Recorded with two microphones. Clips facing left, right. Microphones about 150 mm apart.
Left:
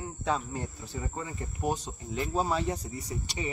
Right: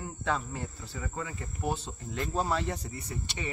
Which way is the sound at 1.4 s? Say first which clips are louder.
Left 3 dB; 15° left (ahead or behind).